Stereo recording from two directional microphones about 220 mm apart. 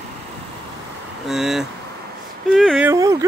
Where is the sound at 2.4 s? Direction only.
Centre (ahead or behind).